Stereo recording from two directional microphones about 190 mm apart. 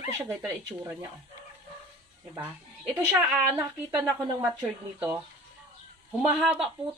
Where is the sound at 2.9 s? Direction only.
10° right (ahead or behind).